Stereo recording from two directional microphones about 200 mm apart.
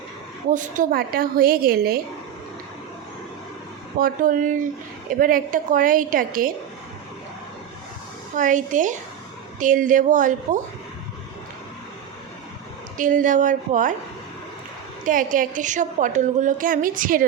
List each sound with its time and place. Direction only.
0.5 s a woman's voice: 40° right (ahead or behind)
4.0 s a woman's voice: 40° right (ahead or behind)
8.4 s a woman's voice: 40° right (ahead or behind)
13.0 s a woman's voice: 40° right (ahead or behind)
15.0 s a woman's voice: 40° right (ahead or behind)